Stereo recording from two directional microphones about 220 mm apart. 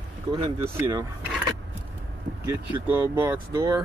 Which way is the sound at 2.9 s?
10° right (ahead or behind).